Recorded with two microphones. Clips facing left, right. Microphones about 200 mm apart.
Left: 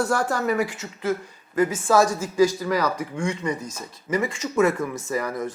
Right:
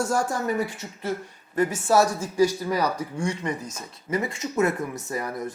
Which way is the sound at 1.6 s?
90° left.